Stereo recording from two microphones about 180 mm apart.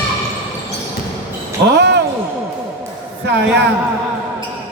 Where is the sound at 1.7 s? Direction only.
70° right (ahead or behind).